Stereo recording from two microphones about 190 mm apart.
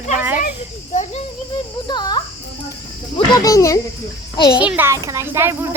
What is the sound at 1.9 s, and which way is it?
A child's voice, 20° left (ahead or behind).